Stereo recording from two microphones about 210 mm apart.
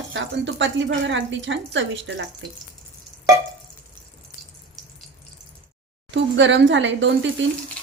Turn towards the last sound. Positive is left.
turn(degrees=-60)  # may be behind; listen again after turning